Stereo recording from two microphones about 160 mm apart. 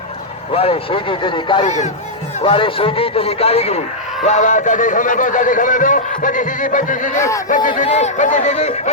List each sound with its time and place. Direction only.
0.5 s a man's voice: 35° left (ahead or behind)
1.6 s speech: 50° left (ahead or behind)
2.4 s speech: 35° left (ahead or behind); by 7.2 s 55° left (ahead or behind)
7.2 s speech: 20° left (ahead or behind)
7.4 s speech: 55° left (ahead or behind)
7.8 s speech: 45° left (ahead or behind)